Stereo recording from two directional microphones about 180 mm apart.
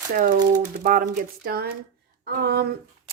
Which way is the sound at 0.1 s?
45° right (ahead or behind).